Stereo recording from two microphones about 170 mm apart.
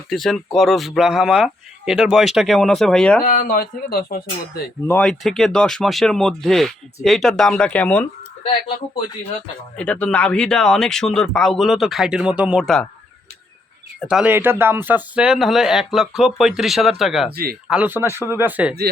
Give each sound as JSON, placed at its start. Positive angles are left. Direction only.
{"t": 0.1, "sound": "speech", "side_deg": 0}
{"t": 3.2, "sound": "speech", "side_deg": 50}
{"t": 4.9, "sound": "speech", "side_deg": 5}
{"t": 9.7, "sound": "speech", "side_deg": 5}
{"t": 14.1, "sound": "speech", "side_deg": -5}
{"t": 17.3, "sound": "speech", "side_deg": -60}
{"t": 17.7, "sound": "speech", "side_deg": -10}